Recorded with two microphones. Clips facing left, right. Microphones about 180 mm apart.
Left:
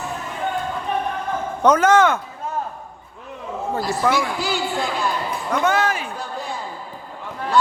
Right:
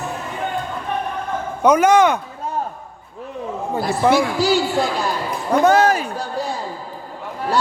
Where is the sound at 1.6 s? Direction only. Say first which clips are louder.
Right 2 dB; 10° right (ahead or behind).